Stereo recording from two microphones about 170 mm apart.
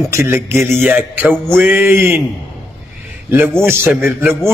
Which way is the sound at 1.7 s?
15° right (ahead or behind).